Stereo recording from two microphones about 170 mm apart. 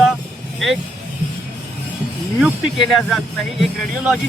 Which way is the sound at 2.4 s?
Centre (ahead or behind).